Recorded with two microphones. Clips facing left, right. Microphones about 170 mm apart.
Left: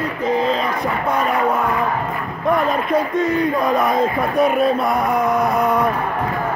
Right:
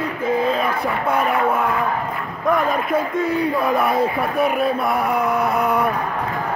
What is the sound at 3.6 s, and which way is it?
Speech, 20° left (ahead or behind).